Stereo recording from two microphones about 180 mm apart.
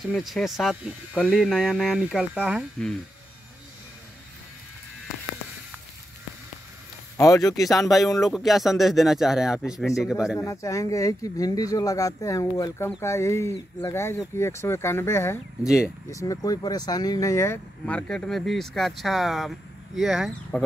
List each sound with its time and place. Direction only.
0.1 s speech: centre (ahead or behind)
7.2 s speech: 20° left (ahead or behind)
7.5 s speech: centre (ahead or behind)
10.4 s speech: 15° left (ahead or behind)
15.6 s speech: 5° right (ahead or behind)
16.1 s speech: 20° left (ahead or behind); by 20.6 s centre (ahead or behind)